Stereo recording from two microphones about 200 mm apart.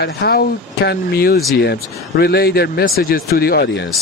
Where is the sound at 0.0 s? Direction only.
50° left (ahead or behind).